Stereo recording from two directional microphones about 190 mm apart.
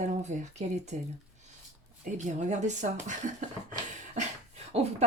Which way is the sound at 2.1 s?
40° right (ahead or behind).